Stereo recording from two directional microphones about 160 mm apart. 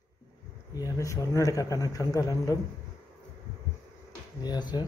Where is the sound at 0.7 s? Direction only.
20° left (ahead or behind).